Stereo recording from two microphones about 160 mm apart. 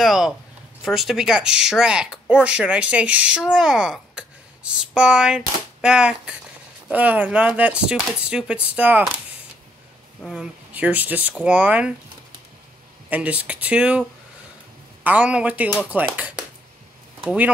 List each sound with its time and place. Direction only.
0.0 s speech: 5° right (ahead or behind)
10.2 s speech: 5° right (ahead or behind)
13.1 s speech: 10° right (ahead or behind)
15.0 s speech: 5° right (ahead or behind)